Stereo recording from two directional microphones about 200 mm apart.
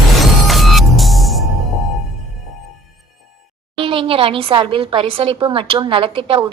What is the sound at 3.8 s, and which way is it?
A woman's voice, 25° right (ahead or behind).